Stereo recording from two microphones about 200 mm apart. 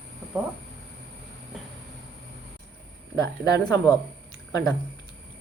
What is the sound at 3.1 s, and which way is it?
Speech, 15° left (ahead or behind).